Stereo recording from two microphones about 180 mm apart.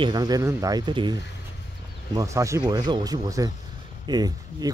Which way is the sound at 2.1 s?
15° right (ahead or behind).